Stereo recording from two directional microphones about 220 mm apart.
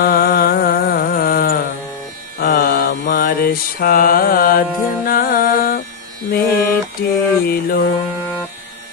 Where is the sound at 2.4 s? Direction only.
40° left (ahead or behind).